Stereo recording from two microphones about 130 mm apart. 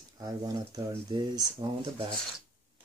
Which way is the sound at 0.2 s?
30° right (ahead or behind).